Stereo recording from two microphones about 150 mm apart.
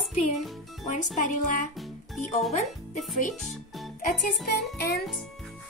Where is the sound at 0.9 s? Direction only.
60° left (ahead or behind).